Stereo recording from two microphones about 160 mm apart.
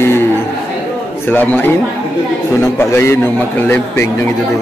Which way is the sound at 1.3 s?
10° left (ahead or behind).